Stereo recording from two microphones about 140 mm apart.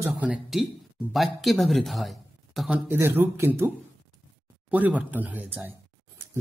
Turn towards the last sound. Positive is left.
turn(degrees=-15)  # may be behind; listen again after turning